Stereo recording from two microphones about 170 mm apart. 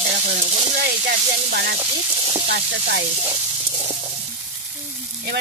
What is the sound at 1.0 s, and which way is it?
Sizzle, 75° right (ahead or behind).